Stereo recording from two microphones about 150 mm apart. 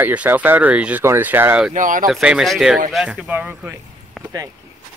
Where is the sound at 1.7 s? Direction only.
60° right (ahead or behind).